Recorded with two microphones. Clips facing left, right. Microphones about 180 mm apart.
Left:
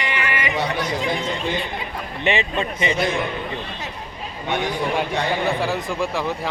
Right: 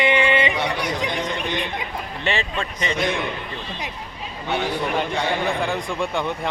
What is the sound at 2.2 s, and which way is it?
Speech, 15° left (ahead or behind).